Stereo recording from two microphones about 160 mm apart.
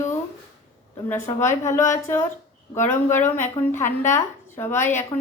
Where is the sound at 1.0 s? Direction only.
15° left (ahead or behind).